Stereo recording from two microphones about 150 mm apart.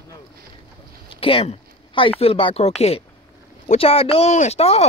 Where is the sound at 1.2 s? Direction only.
40° left (ahead or behind).